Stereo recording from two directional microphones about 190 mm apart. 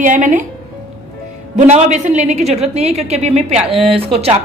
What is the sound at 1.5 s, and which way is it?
A woman's voice, 35° right (ahead or behind).